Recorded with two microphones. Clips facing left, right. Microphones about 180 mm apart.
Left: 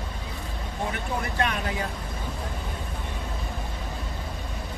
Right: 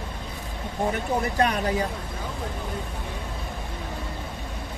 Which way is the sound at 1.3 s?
40° right (ahead or behind).